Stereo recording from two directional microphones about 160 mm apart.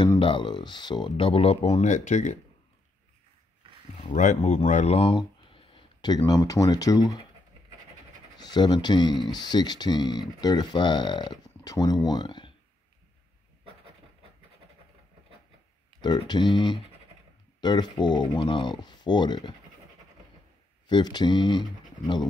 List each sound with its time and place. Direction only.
0.2 s speech: 30° left (ahead or behind); by 2.3 s 50° left (ahead or behind)
4.0 s speech: 50° left (ahead or behind); by 7.2 s 25° left (ahead or behind)
8.4 s speech: 25° left (ahead or behind)
16.0 s speech: 25° left (ahead or behind)
20.8 s speech: 25° left (ahead or behind)